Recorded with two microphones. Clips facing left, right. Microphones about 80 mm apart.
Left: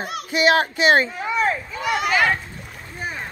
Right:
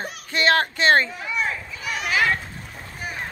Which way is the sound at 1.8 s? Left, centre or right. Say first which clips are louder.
Left 7 dB; left.